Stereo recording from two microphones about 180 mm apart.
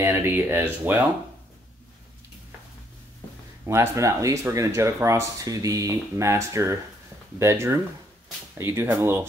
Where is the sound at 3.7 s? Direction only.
15° right (ahead or behind).